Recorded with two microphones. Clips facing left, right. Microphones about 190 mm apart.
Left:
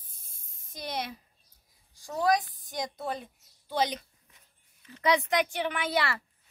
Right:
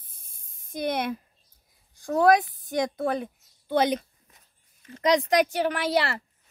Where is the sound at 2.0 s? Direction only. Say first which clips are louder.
Right 7 dB; 60° right (ahead or behind).